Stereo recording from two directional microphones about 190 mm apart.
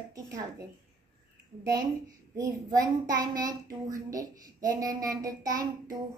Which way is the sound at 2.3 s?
20° right (ahead or behind).